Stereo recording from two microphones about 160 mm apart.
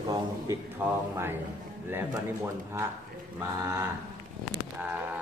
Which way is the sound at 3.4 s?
20° right (ahead or behind).